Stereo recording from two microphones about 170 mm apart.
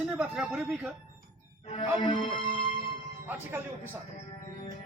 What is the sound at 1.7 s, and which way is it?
Music, 30° left (ahead or behind).